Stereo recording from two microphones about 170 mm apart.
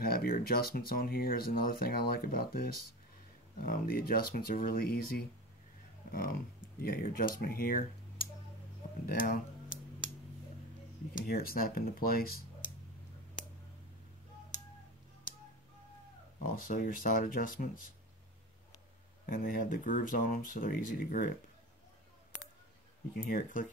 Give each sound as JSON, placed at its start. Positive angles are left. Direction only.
{"t": 0.0, "sound": "speech", "side_deg": 60}
{"t": 6.8, "sound": "speech", "side_deg": 60}
{"t": 11.1, "sound": "speech", "side_deg": 60}
{"t": 16.4, "sound": "speech", "side_deg": 55}
{"t": 19.2, "sound": "speech", "side_deg": 55}
{"t": 23.1, "sound": "speech", "side_deg": 55}